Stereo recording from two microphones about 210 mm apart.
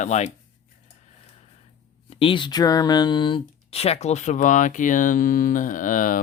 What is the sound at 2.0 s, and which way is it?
Speech, 25° left (ahead or behind).